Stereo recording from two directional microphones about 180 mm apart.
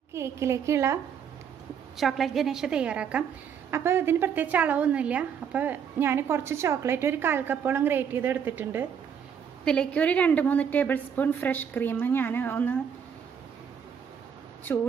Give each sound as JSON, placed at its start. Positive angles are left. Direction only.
{"t": 0.1, "sound": "a woman's voice", "side_deg": -15}
{"t": 2.0, "sound": "a woman's voice", "side_deg": 0}
{"t": 9.7, "sound": "a woman's voice", "side_deg": 5}